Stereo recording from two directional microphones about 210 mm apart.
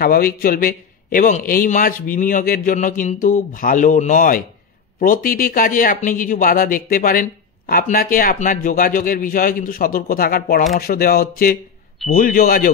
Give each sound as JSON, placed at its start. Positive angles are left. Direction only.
{"t": 0.0, "sound": "speech", "side_deg": 45}